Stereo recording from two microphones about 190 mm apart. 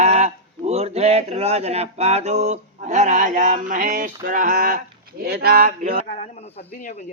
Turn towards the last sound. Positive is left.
turn(degrees=-35)  # may be behind; listen again after turning